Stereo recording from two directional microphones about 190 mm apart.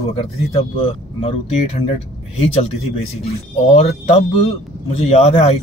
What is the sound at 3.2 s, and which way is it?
A man's voice, 30° left (ahead or behind).